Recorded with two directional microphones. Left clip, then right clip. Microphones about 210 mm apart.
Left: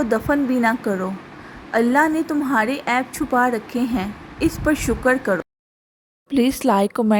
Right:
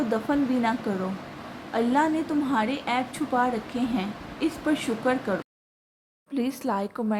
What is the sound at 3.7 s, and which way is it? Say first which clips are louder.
Speech: left 6 dB; 70° left (ahead or behind).